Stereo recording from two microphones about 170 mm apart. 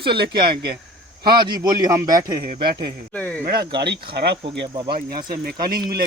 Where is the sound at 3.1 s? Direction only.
10° left (ahead or behind).